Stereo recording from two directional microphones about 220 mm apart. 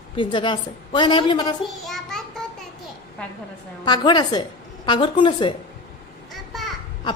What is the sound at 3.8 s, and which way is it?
A woman's voice, 20° left (ahead or behind).